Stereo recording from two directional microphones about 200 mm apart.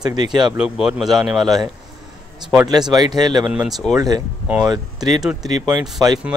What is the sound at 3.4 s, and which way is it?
Speech, 10° right (ahead or behind).